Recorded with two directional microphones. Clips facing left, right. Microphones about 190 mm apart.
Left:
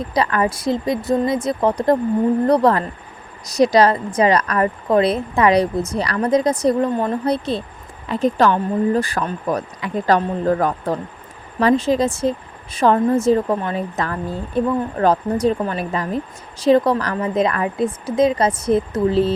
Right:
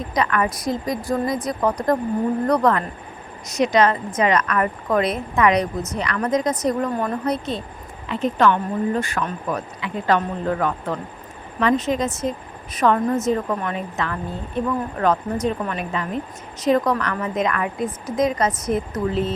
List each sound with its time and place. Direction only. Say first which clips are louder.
0.1 s a woman's voice: left 2 dB; 30° left (ahead or behind)